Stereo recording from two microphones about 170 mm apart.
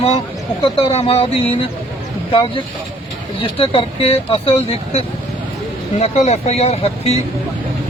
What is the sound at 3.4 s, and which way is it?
Speech, 30° left (ahead or behind).